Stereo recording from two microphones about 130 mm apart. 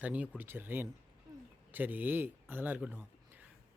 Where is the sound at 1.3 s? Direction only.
30° right (ahead or behind).